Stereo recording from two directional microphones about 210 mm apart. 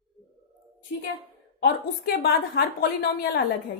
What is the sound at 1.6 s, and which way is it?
A woman's voice, 50° left (ahead or behind).